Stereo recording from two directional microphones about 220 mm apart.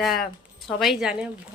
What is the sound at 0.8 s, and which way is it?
Speech, centre (ahead or behind).